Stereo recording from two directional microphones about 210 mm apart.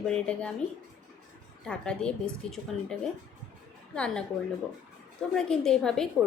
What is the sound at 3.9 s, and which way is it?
Speech, 5° left (ahead or behind).